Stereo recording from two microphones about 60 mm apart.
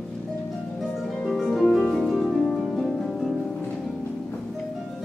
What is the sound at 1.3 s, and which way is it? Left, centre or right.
Music, centre.